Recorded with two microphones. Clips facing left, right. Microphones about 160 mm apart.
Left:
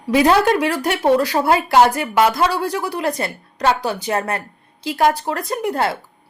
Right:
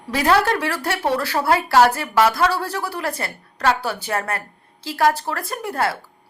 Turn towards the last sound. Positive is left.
turn(degrees=20)  # may be behind; listen again after turning